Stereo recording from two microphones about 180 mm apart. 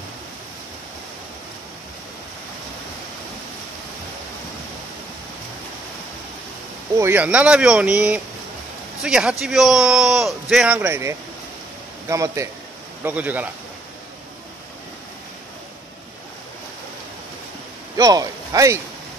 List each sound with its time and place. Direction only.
7.0 s a man's voice: 10° right (ahead or behind)
17.9 s speech: 20° right (ahead or behind)